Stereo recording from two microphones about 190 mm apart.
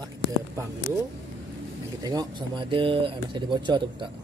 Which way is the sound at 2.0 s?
20° right (ahead or behind).